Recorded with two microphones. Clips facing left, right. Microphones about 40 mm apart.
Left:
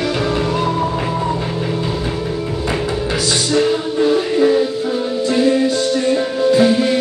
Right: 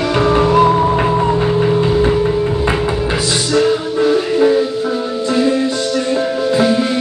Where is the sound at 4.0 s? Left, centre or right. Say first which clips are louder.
Right 1 dB; centre.